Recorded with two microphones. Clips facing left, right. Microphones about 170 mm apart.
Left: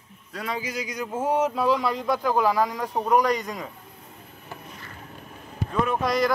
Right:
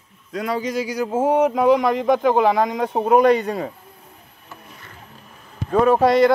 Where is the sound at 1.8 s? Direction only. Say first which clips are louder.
Right 7 dB; 90° right.